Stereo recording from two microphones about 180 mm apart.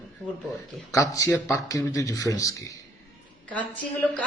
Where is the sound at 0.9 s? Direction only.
15° left (ahead or behind).